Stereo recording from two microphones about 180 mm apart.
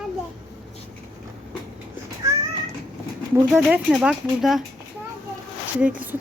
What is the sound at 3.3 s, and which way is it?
Speech, 5° right (ahead or behind).